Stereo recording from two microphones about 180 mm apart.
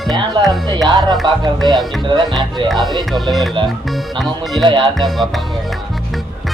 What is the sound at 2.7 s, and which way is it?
A man's voice, centre (ahead or behind).